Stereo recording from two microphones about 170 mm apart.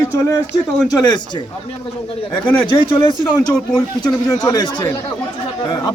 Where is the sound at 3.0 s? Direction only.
25° left (ahead or behind).